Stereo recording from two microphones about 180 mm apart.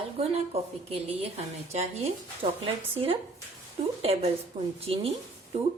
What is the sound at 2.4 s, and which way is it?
A woman's voice, 35° right (ahead or behind).